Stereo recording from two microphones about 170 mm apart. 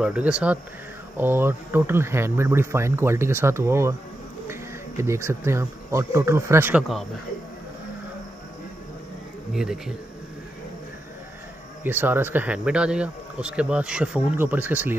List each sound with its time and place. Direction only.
0.0 s speech: 5° right (ahead or behind)
9.5 s speech: centre (ahead or behind)
11.8 s speech: 10° right (ahead or behind)